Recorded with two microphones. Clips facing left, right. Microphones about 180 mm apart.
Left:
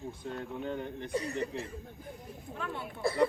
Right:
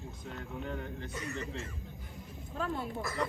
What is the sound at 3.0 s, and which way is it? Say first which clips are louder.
Speech: left 8 dB; 30° left (ahead or behind).